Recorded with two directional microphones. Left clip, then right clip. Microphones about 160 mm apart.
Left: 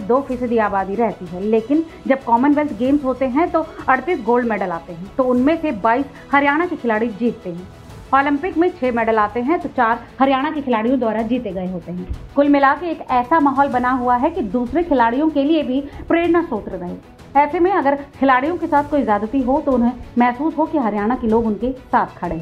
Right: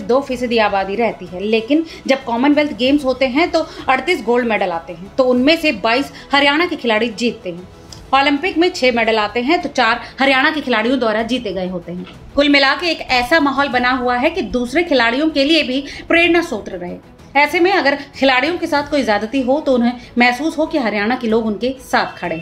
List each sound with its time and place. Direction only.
0.1 s a woman's voice: 10° right (ahead or behind)
20.2 s a woman's voice: 5° right (ahead or behind)